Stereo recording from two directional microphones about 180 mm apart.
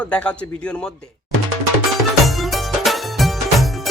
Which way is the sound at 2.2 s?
Centre (ahead or behind).